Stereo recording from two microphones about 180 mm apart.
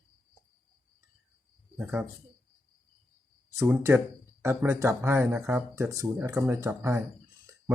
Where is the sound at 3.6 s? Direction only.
15° right (ahead or behind).